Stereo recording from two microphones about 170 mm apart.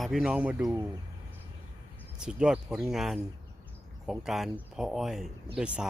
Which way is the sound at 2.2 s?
5° right (ahead or behind).